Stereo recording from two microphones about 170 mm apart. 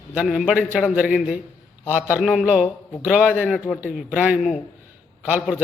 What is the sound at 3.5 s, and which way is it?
Speech, 5° left (ahead or behind).